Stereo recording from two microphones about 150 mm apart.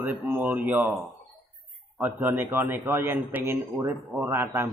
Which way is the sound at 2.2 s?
15° right (ahead or behind).